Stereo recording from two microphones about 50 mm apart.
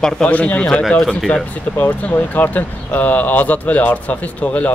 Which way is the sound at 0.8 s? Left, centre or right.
Centre.